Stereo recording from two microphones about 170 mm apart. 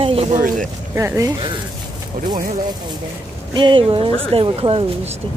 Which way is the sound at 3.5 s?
30° right (ahead or behind).